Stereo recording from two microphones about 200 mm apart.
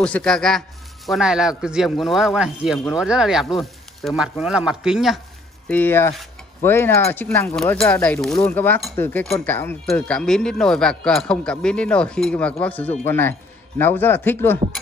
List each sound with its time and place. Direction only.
0.0 s a man's voice: 5° left (ahead or behind)
5.7 s a man's voice: 10° left (ahead or behind)